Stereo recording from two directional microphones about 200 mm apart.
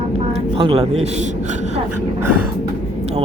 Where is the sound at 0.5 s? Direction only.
30° right (ahead or behind).